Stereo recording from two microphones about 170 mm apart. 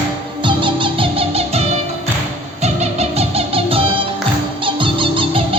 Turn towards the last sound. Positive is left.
turn(degrees=-30)  # may be behind; listen again after turning